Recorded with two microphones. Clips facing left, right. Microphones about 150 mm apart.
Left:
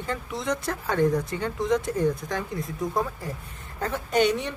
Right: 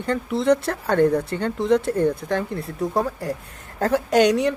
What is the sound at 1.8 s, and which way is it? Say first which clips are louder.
Speech: right 4 dB; 60° right (ahead or behind).